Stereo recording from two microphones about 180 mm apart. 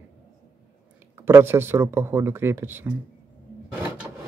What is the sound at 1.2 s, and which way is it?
Speech, 10° right (ahead or behind).